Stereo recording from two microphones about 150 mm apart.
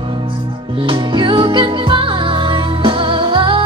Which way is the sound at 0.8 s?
35° right (ahead or behind).